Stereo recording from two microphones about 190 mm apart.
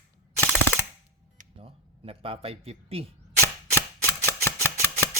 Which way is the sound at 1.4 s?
30° right (ahead or behind).